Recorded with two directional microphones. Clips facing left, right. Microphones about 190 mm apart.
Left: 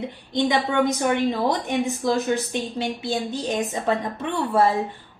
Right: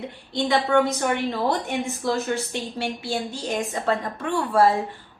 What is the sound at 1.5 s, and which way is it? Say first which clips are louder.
Speech: left 2 dB; 15° left (ahead or behind).